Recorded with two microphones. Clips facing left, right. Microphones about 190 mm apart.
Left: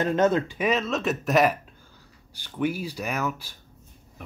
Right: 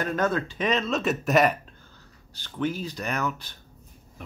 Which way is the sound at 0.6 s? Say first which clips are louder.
Left 1 dB; 5° left (ahead or behind).